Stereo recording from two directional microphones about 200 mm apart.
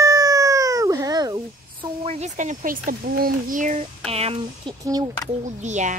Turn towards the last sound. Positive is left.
turn(degrees=-35)  # may be behind; listen again after turning